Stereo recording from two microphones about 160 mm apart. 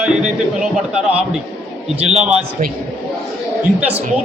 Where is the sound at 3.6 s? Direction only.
10° right (ahead or behind).